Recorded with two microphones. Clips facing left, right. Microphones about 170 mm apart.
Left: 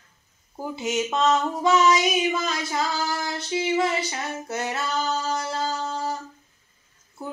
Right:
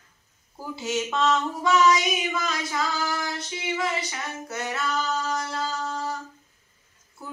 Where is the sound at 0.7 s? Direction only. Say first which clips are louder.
Left 2 dB; 20° left (ahead or behind).